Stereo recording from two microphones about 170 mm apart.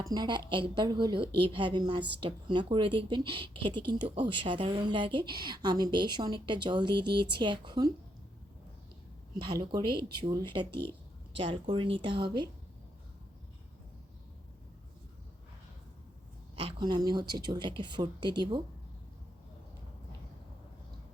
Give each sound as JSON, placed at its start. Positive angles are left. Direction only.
{"t": 0.0, "sound": "a woman's voice", "side_deg": -25}
{"t": 9.4, "sound": "a woman's voice", "side_deg": -25}
{"t": 16.6, "sound": "a woman's voice", "side_deg": -30}